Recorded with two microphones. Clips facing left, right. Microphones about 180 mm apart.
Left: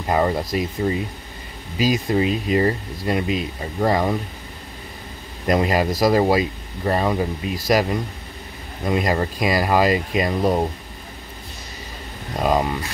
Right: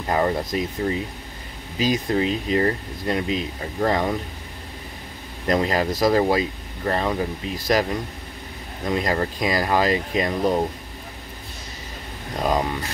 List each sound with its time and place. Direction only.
0.0 s speech: 10° left (ahead or behind)
5.5 s speech: 10° left (ahead or behind)
8.8 s speech: 5° left (ahead or behind)
10.4 s speech: 20° left (ahead or behind)
12.4 s speech: 5° left (ahead or behind)